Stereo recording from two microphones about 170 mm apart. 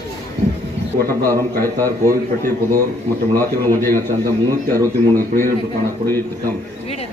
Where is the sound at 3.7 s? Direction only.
15° left (ahead or behind).